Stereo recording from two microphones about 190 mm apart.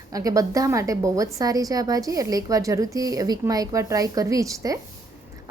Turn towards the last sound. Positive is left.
turn(degrees=-15)  # may be behind; listen again after turning